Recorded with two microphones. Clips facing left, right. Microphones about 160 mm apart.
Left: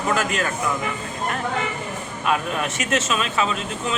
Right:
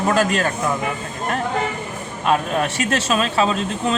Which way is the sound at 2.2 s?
35° right (ahead or behind).